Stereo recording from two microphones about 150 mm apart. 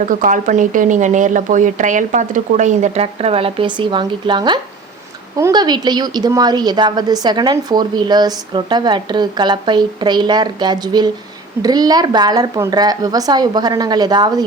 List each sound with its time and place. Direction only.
0.0 s a woman's voice: 60° right (ahead or behind); by 14.4 s 30° right (ahead or behind)